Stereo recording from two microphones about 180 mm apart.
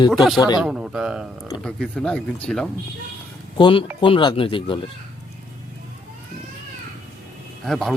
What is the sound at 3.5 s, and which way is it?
Speech, 25° left (ahead or behind).